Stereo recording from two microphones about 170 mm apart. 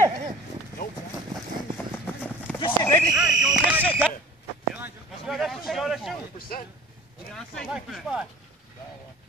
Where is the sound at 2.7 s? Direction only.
10° left (ahead or behind).